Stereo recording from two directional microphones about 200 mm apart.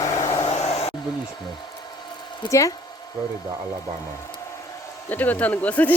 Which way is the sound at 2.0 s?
20° left (ahead or behind).